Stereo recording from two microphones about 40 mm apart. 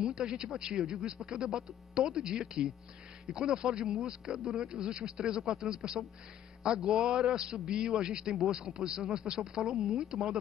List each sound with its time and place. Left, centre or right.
0.0 s speech: centre